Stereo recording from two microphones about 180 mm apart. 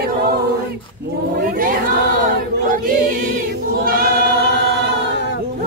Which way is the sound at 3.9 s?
55° right (ahead or behind).